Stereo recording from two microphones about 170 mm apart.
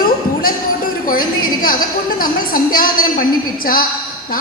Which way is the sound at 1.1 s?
55° left (ahead or behind).